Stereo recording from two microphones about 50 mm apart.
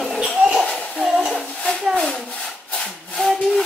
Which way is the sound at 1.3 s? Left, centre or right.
Centre.